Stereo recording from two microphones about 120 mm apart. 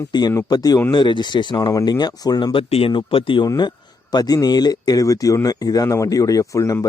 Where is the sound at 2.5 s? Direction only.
50° left (ahead or behind).